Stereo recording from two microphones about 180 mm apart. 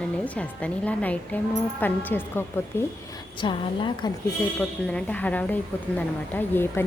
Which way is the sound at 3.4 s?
25° left (ahead or behind).